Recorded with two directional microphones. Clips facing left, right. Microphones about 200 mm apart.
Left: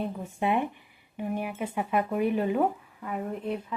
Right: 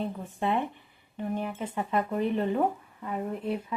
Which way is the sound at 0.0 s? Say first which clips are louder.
Left 1 dB; 10° left (ahead or behind).